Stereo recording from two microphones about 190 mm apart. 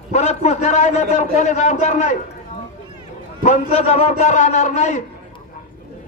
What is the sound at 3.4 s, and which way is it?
A man's voice, 35° left (ahead or behind).